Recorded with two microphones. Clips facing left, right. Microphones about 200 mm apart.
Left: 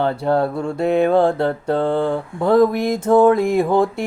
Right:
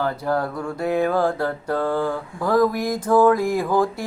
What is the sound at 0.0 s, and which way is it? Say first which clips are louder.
Mantra: left 5 dB; 25° left (ahead or behind).